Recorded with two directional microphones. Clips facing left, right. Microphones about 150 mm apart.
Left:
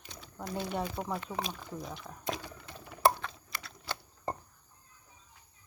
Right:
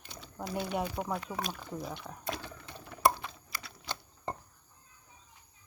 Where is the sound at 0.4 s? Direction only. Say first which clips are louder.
Right 1 dB; 5° right (ahead or behind).